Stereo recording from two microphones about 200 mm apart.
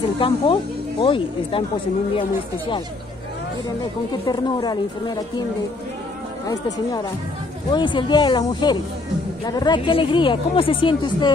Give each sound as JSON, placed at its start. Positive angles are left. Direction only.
{"t": 0.2, "sound": "speech", "side_deg": 25}
{"t": 4.3, "sound": "speech", "side_deg": 20}
{"t": 6.4, "sound": "speech", "side_deg": 20}